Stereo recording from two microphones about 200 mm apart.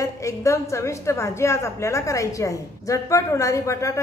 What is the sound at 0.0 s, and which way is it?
A woman's voice, 15° left (ahead or behind).